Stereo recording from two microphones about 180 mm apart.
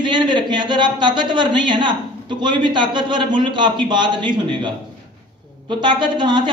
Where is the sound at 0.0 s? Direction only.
25° right (ahead or behind).